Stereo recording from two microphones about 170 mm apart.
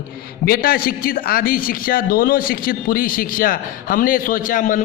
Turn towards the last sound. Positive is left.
turn(degrees=50)  # may be behind; listen again after turning